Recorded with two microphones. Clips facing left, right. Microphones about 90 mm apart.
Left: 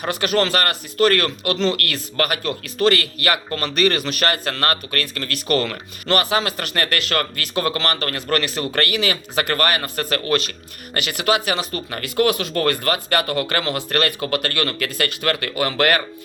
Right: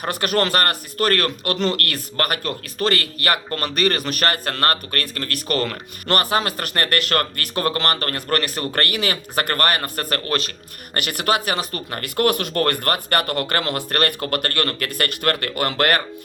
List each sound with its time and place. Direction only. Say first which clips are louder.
0.0 s a man's voice: left 1 dB; 45° right (ahead or behind)